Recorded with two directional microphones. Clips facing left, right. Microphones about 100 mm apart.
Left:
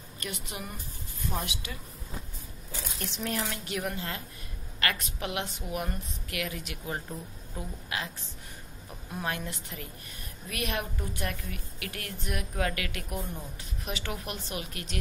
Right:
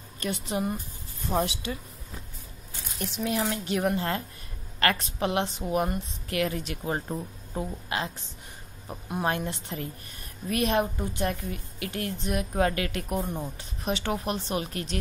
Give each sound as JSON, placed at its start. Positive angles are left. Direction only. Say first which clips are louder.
{"t": 0.2, "sound": "a woman's voice", "louder": "right 10 dB", "side_deg": -30}
{"t": 3.0, "sound": "speech", "louder": "right 5 dB", "side_deg": -10}
{"t": 3.3, "sound": "a woman's voice", "louder": "right 6 dB", "side_deg": -25}
{"t": 9.2, "sound": "a woman's voice", "louder": "right 6 dB", "side_deg": -30}